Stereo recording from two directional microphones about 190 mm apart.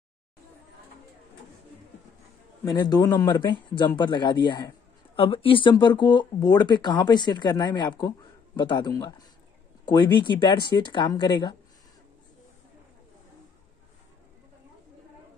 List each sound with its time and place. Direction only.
2.6 s speech: 20° left (ahead or behind)